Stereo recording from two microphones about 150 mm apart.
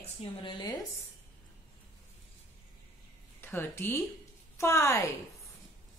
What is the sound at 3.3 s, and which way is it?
A woman's voice, 15° left (ahead or behind).